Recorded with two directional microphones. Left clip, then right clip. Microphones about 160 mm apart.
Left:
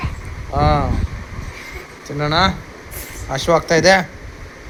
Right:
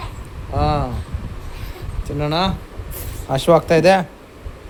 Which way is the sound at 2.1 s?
10° right (ahead or behind).